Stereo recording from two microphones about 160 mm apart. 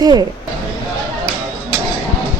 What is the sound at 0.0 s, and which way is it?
Speech, 25° right (ahead or behind).